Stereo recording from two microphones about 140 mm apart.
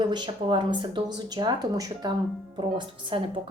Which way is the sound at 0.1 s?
35° right (ahead or behind).